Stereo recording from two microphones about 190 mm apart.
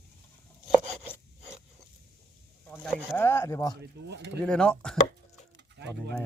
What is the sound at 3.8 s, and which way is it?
Speech, 60° right (ahead or behind).